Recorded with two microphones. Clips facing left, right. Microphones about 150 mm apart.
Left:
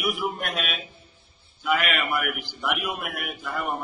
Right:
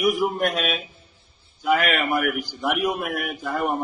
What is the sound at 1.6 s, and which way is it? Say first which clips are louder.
A man's voice: right 4 dB; 40° right (ahead or behind).